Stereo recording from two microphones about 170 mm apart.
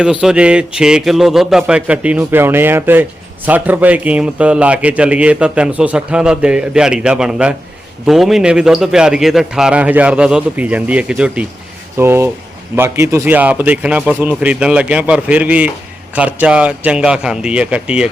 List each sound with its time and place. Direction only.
0.0 s a man's voice: 5° right (ahead or behind)